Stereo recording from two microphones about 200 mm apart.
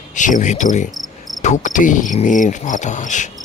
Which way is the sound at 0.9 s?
Centre (ahead or behind).